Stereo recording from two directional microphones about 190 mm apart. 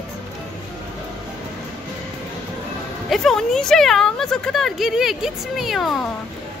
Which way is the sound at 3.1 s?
Centre (ahead or behind).